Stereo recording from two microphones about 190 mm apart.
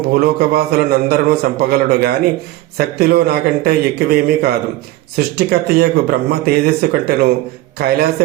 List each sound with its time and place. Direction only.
0.0 s a man's voice: 55° right (ahead or behind)